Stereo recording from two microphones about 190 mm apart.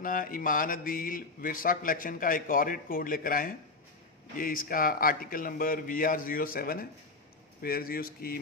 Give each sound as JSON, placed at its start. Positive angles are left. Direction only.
{"t": 0.0, "sound": "speech", "side_deg": 45}